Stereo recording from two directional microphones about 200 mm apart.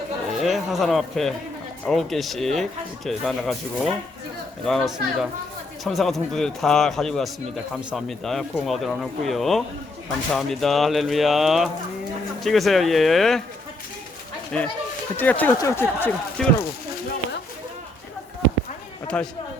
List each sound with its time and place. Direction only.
0.4 s speech: centre (ahead or behind)
14.5 s speech: 5° left (ahead or behind)
19.0 s speech: 5° left (ahead or behind)